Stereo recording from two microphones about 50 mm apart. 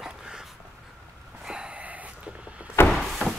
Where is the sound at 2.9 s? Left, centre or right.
Centre.